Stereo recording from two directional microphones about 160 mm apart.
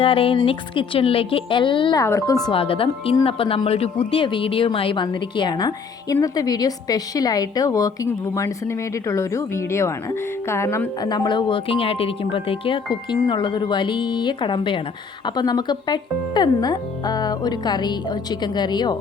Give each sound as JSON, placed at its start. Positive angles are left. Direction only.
{"t": 0.0, "sound": "speech", "side_deg": 35}
{"t": 2.5, "sound": "a woman's voice", "side_deg": 35}